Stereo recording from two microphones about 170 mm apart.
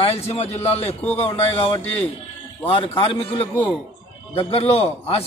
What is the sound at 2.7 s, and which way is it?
A man's voice, 30° left (ahead or behind).